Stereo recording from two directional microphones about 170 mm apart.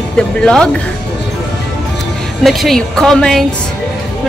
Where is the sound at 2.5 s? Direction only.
Centre (ahead or behind).